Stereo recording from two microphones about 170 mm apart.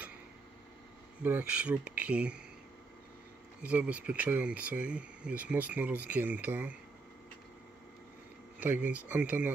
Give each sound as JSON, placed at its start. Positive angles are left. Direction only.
{"t": 1.2, "sound": "speech", "side_deg": -10}
{"t": 3.6, "sound": "speech", "side_deg": -10}
{"t": 8.5, "sound": "speech", "side_deg": -10}